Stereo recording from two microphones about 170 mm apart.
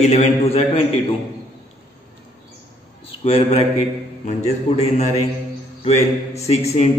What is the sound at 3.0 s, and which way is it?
Speech, 35° left (ahead or behind).